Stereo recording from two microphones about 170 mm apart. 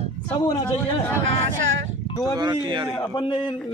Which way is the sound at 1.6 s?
90° right.